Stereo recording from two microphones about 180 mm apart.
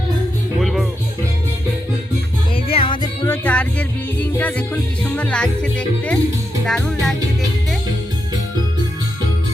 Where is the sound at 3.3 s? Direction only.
5° left (ahead or behind).